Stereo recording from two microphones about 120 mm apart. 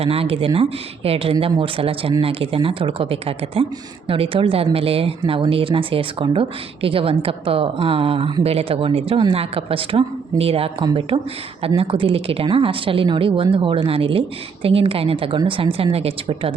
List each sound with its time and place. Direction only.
0.0 s speech: 55° right (ahead or behind)